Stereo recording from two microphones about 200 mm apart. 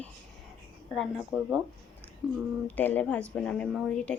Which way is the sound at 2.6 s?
10° left (ahead or behind).